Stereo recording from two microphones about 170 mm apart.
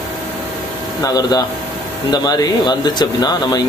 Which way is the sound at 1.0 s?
20° left (ahead or behind).